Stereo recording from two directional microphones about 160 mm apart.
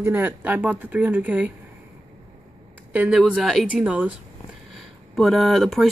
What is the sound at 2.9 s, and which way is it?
A woman's voice, 5° right (ahead or behind).